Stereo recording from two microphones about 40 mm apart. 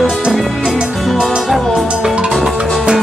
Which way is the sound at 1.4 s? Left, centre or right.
Centre.